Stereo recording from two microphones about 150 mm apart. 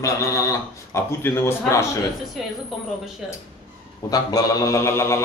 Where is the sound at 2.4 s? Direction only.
Centre (ahead or behind).